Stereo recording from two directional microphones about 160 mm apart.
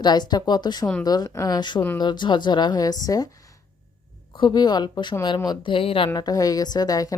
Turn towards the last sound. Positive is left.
turn(degrees=25)  # may be behind; listen again after turning